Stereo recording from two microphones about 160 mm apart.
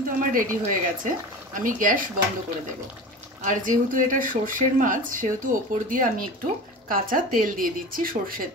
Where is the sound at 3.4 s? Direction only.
55° right (ahead or behind).